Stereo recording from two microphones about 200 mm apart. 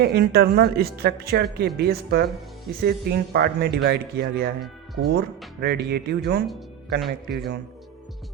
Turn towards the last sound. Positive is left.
turn(degrees=-50)  # may be behind; listen again after turning